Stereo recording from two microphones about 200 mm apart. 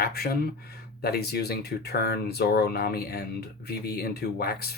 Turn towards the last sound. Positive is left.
turn(degrees=50)  # may be behind; listen again after turning